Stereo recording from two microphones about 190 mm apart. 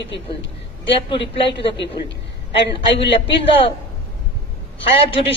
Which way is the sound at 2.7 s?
30° left (ahead or behind).